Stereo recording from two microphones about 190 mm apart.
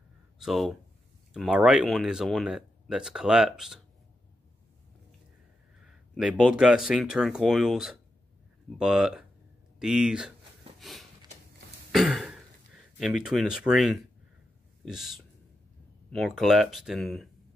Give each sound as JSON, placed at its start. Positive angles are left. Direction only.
{"t": 0.4, "sound": "speech", "side_deg": 0}
{"t": 5.9, "sound": "a sound", "side_deg": -5}
{"t": 6.4, "sound": "speech", "side_deg": -5}
{"t": 10.8, "sound": "a sound", "side_deg": 0}
{"t": 11.9, "sound": "throat clearing", "side_deg": 0}
{"t": 13.0, "sound": "speech", "side_deg": 0}